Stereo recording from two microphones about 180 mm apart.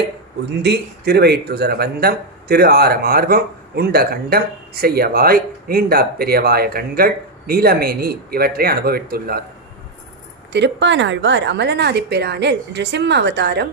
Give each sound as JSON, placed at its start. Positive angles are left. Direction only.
{"t": 0.6, "sound": "speech", "side_deg": -65}
{"t": 10.5, "sound": "speech", "side_deg": -75}